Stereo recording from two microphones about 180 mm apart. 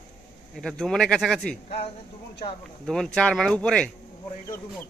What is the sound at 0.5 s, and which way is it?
Speech, centre (ahead or behind).